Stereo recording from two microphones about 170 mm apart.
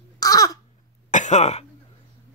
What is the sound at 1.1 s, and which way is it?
Throat clearing, 45° left (ahead or behind).